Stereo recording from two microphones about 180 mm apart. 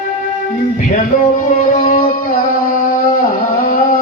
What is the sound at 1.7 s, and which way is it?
Music, 45° left (ahead or behind).